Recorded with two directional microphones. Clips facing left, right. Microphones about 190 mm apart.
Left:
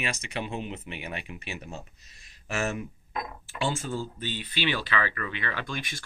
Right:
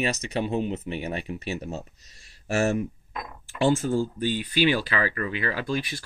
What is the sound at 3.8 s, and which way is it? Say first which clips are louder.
Speech: right 8 dB; 45° right (ahead or behind).